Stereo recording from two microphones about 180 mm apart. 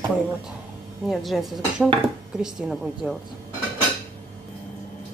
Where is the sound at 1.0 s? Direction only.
Centre (ahead or behind).